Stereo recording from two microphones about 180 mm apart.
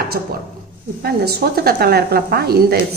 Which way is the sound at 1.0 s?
60° right (ahead or behind).